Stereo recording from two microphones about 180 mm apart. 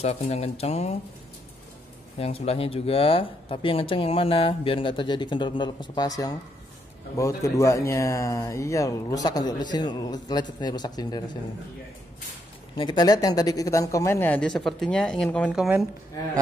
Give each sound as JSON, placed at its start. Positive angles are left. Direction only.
{"t": 0.0, "sound": "speech", "side_deg": 35}
{"t": 2.1, "sound": "speech", "side_deg": 35}
{"t": 12.7, "sound": "speech", "side_deg": 25}